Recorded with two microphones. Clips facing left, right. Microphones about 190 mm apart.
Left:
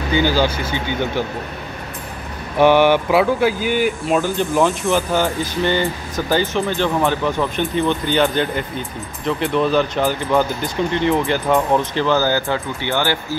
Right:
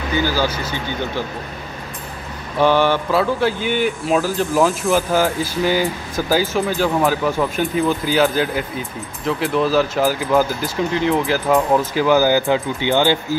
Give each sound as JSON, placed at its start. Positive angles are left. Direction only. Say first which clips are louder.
{"t": 0.2, "sound": "speech", "louder": "left 2 dB", "side_deg": 20}
{"t": 2.6, "sound": "speech", "louder": "left 3 dB", "side_deg": 15}